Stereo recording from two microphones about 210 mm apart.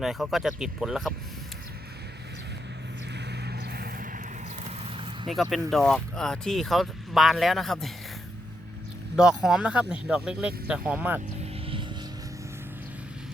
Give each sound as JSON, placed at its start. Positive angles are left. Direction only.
{"t": 0.0, "sound": "speech", "side_deg": 0}
{"t": 3.2, "sound": "vehicle", "side_deg": -50}
{"t": 4.6, "sound": "a sound", "side_deg": -30}
{"t": 5.3, "sound": "speech", "side_deg": 0}
{"t": 9.1, "sound": "speech", "side_deg": -5}
{"t": 11.7, "sound": "vehicle", "side_deg": -25}